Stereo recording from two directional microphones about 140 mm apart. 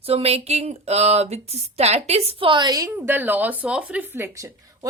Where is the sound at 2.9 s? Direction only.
15° right (ahead or behind).